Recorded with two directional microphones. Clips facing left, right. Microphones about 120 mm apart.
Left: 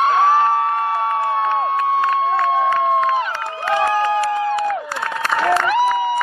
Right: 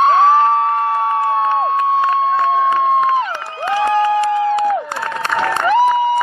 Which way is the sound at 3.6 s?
25° right (ahead or behind).